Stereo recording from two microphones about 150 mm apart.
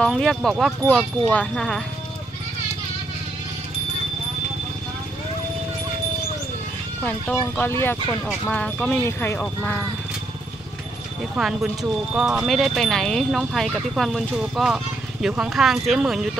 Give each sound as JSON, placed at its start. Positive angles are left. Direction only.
{"t": 0.0, "sound": "speech", "side_deg": 5}
{"t": 7.0, "sound": "speech", "side_deg": 10}
{"t": 11.3, "sound": "speech", "side_deg": -5}